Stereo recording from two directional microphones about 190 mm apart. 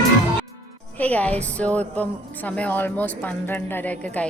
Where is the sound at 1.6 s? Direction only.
5° left (ahead or behind).